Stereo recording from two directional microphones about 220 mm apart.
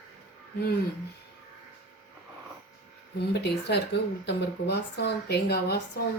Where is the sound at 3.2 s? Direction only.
50° left (ahead or behind).